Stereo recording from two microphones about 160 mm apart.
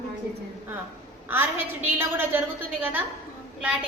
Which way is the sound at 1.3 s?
15° right (ahead or behind).